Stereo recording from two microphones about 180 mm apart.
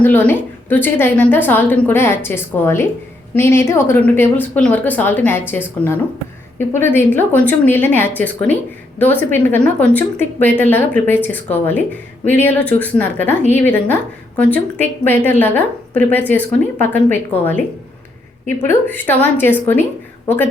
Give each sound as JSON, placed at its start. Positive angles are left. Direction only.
{"t": 0.0, "sound": "a woman's voice", "side_deg": 10}
{"t": 6.6, "sound": "a woman's voice", "side_deg": 10}